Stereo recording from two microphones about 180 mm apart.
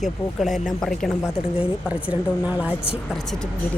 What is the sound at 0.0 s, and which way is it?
A woman's voice, centre (ahead or behind).